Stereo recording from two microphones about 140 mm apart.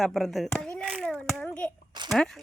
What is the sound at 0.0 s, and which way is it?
Speech, centre (ahead or behind).